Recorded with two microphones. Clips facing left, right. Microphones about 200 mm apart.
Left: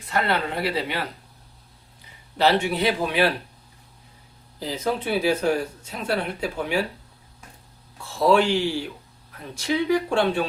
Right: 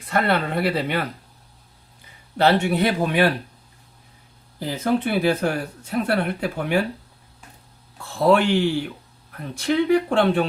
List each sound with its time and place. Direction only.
0.1 s speech: 55° right (ahead or behind)
2.4 s speech: 50° right (ahead or behind)
4.6 s speech: 60° right (ahead or behind)
8.0 s speech: 60° right (ahead or behind)